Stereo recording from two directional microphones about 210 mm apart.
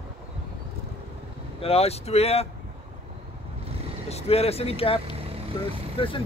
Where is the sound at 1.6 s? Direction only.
30° left (ahead or behind).